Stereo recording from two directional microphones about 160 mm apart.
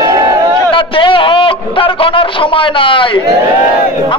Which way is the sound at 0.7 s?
30° left (ahead or behind).